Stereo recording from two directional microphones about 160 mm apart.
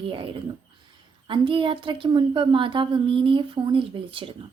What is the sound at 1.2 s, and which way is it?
A child's voice, 30° right (ahead or behind).